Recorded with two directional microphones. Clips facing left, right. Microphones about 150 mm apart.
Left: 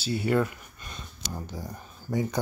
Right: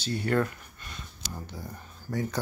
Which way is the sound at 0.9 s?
25° left (ahead or behind).